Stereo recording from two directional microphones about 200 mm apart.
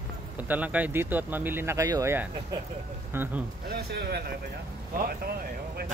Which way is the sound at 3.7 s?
55° right (ahead or behind).